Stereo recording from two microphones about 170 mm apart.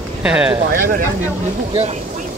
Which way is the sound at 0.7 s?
60° right (ahead or behind).